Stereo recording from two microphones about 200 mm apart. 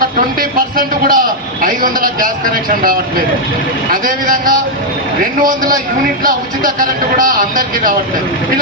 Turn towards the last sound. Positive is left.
turn(degrees=-45)  # may be behind; listen again after turning